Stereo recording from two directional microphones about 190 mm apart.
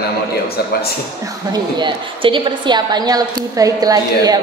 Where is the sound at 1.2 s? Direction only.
20° right (ahead or behind).